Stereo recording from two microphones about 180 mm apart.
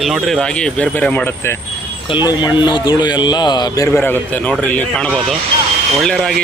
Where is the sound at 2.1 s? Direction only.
25° left (ahead or behind).